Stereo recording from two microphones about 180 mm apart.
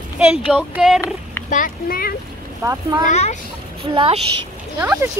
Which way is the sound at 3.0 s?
40° left (ahead or behind).